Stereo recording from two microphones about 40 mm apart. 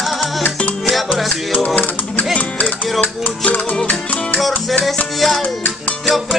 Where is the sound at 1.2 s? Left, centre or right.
Centre.